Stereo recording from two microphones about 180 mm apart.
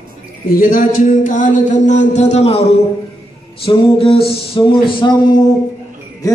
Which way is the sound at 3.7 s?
30° left (ahead or behind).